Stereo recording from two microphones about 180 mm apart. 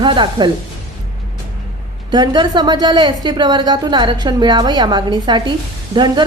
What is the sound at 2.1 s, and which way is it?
A woman's voice, 25° right (ahead or behind).